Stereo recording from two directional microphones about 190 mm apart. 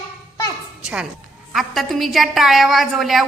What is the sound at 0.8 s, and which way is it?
Music, 5° right (ahead or behind).